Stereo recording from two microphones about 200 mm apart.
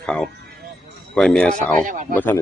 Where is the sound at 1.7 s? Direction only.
40° right (ahead or behind).